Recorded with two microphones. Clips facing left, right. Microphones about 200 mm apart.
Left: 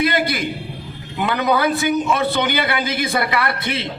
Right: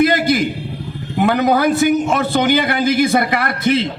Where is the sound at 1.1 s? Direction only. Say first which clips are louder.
Right 5 dB; 50° right (ahead or behind).